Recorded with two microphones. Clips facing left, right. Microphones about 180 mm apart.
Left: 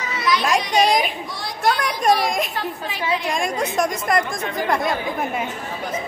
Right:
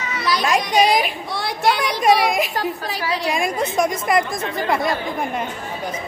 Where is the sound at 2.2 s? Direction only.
5° right (ahead or behind).